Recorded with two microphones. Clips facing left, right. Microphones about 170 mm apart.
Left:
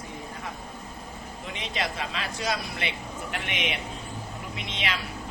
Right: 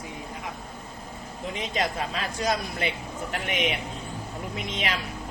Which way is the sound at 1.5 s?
40° right (ahead or behind).